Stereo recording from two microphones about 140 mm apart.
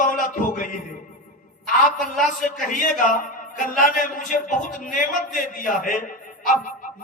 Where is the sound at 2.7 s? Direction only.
70° left (ahead or behind).